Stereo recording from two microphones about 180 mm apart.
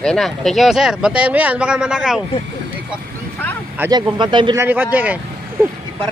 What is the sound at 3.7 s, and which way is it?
Speech, 15° right (ahead or behind).